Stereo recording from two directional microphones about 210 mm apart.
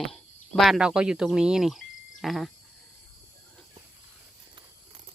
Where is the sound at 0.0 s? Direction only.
Centre (ahead or behind).